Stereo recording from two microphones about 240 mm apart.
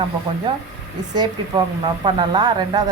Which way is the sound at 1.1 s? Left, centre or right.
Centre.